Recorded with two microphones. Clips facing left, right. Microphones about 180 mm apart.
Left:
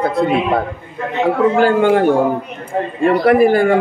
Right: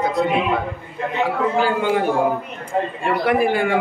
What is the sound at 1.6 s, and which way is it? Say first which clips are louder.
Speech: left 6 dB; 55° left (ahead or behind).